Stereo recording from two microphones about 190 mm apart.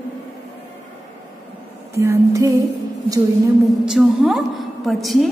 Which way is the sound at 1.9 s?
15° right (ahead or behind).